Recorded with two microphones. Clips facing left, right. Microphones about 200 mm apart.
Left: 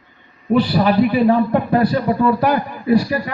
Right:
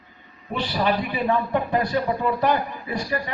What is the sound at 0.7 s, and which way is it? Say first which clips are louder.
A man's voice: left 9 dB; 35° left (ahead or behind).